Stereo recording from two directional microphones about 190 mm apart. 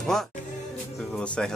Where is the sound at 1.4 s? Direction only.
5° left (ahead or behind).